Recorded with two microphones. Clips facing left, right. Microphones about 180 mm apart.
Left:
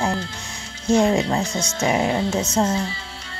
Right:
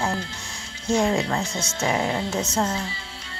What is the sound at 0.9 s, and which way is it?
Speech, 20° left (ahead or behind).